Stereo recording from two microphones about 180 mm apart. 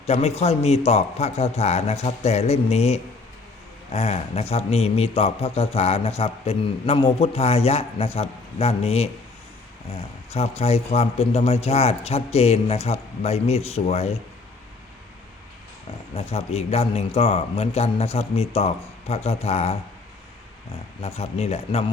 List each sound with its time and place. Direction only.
0.0 s speech: 35° left (ahead or behind)
16.1 s speech: 35° left (ahead or behind)
21.0 s speech: 35° left (ahead or behind)